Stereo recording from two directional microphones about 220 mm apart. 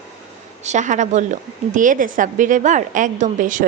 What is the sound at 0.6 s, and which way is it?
A woman's voice, 35° right (ahead or behind).